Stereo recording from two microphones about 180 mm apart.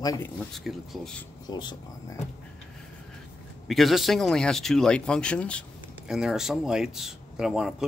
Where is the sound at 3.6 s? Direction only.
Centre (ahead or behind).